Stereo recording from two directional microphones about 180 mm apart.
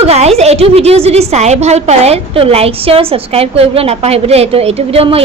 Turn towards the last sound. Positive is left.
turn(degrees=-35)  # may be behind; listen again after turning